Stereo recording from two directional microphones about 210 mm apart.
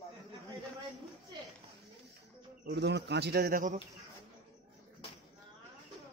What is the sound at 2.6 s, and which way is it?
Speech, 55° right (ahead or behind).